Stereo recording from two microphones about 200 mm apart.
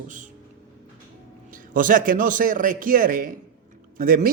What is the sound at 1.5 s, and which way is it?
A man's voice, 40° right (ahead or behind).